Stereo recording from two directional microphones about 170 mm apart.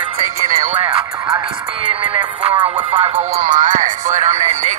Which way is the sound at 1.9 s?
30° right (ahead or behind).